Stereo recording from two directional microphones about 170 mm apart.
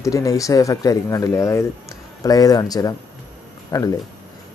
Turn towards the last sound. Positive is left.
turn(degrees=20)  # may be behind; listen again after turning